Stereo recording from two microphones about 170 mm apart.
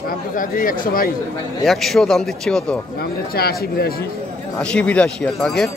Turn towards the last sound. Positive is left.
turn(degrees=5)  # may be behind; listen again after turning